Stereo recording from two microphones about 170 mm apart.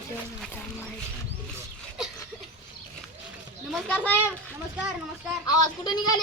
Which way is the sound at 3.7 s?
5° left (ahead or behind).